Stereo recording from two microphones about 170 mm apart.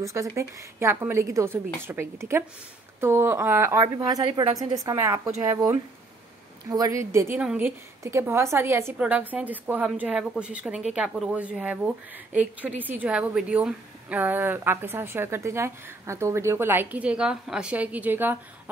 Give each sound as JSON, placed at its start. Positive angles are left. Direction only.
{"t": 0.0, "sound": "a woman's voice", "side_deg": -20}